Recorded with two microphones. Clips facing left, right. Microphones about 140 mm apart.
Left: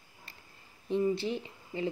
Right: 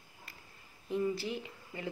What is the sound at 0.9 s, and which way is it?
Speech, 25° left (ahead or behind).